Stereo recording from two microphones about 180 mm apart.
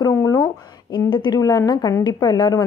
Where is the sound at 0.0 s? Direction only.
20° left (ahead or behind).